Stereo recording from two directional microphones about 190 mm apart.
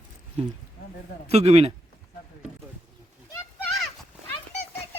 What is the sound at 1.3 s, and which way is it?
Speech, 35° right (ahead or behind).